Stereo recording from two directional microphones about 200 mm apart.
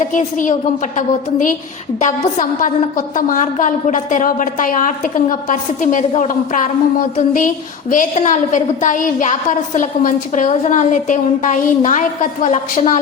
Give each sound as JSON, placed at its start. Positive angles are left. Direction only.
{"t": 0.1, "sound": "a woman's voice", "side_deg": 40}